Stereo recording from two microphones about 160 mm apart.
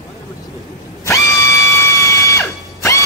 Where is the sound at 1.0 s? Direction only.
20° left (ahead or behind).